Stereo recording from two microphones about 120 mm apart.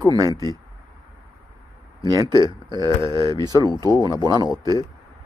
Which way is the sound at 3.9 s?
35° right (ahead or behind).